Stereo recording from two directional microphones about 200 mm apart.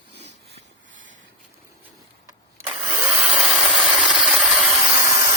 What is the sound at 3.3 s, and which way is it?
Engine, 5° right (ahead or behind).